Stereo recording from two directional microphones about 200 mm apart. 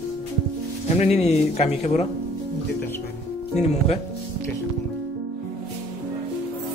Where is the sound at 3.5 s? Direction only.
35° left (ahead or behind).